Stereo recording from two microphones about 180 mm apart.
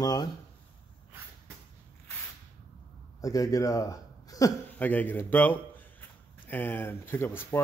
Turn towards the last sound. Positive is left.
turn(degrees=10)  # may be behind; listen again after turning